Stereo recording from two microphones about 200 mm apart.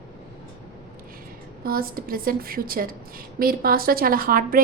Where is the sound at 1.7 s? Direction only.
45° right (ahead or behind).